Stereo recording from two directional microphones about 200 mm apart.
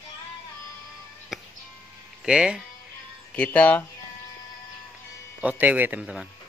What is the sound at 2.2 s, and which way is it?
Speech, 5° right (ahead or behind).